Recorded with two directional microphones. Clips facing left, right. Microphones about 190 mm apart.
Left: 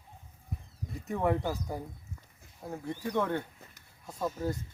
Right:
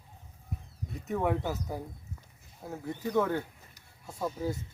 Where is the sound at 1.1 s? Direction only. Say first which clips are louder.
Even; centre (ahead or behind).